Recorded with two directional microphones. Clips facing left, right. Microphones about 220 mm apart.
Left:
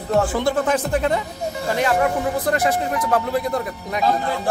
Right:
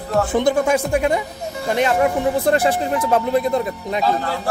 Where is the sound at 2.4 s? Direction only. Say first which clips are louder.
Right 3 dB; 30° right (ahead or behind).